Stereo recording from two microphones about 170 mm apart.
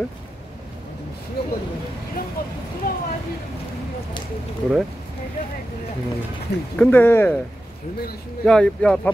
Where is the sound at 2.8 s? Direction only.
60° left (ahead or behind).